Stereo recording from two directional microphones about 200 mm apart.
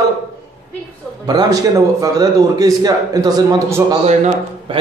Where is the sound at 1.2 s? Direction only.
20° right (ahead or behind).